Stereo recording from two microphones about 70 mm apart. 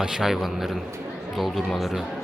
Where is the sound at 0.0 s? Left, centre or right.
Centre.